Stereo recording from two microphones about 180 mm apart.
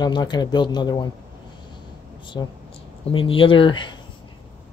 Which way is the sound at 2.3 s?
20° left (ahead or behind).